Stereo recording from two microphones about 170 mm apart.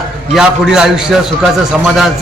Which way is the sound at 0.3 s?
5° right (ahead or behind).